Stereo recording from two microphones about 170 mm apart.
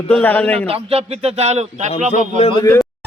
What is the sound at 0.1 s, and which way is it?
Speech, 10° left (ahead or behind).